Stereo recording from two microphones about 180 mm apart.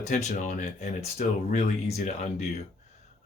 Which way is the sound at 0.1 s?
45° left (ahead or behind).